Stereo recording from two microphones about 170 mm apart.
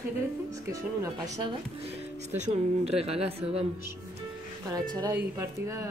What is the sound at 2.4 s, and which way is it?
Speech, 35° right (ahead or behind).